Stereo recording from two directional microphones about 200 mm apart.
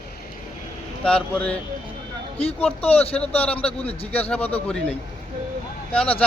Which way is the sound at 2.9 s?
30° left (ahead or behind).